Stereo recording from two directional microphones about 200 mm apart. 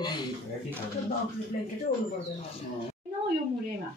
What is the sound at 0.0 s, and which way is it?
Speech, 20° left (ahead or behind).